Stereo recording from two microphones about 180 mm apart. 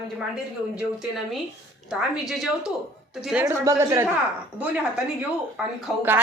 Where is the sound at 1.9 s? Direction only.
5° right (ahead or behind).